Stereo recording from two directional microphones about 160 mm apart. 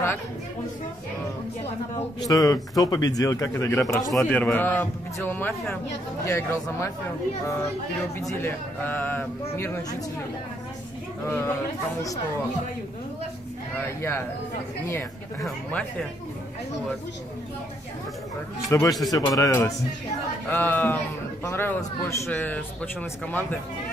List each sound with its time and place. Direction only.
2.2 s speech: 20° left (ahead or behind)
4.1 s speech: 5° left (ahead or behind)
8.2 s speech: 15° left (ahead or behind)
11.2 s speech: 15° left (ahead or behind)
13.7 s speech: 15° left (ahead or behind)
15.4 s speech: 10° left (ahead or behind)
18.7 s speech: 20° left (ahead or behind)